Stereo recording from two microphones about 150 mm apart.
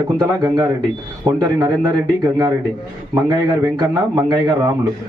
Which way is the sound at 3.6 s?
25° right (ahead or behind).